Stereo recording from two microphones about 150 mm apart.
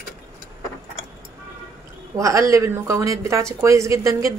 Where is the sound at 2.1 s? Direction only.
20° right (ahead or behind).